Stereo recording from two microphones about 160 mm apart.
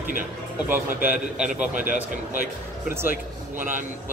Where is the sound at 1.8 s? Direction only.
55° right (ahead or behind).